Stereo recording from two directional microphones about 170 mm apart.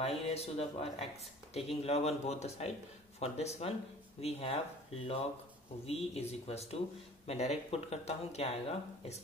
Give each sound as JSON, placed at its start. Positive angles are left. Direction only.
{"t": 0.0, "sound": "speech", "side_deg": 35}